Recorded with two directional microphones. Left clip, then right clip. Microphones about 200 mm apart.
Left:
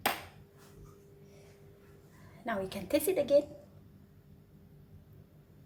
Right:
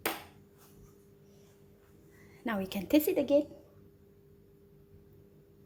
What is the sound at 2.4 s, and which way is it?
Speech, 40° right (ahead or behind).